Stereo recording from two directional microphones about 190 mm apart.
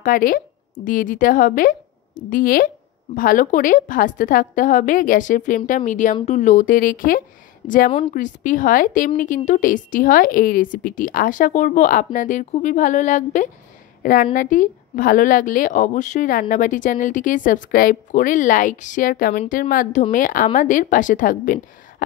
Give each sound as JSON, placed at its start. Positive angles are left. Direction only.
{"t": 0.0, "sound": "a woman's voice", "side_deg": 45}